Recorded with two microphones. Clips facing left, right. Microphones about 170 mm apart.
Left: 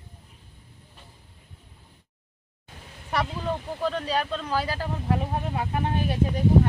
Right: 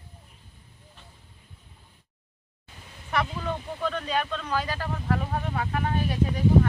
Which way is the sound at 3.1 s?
35° left (ahead or behind).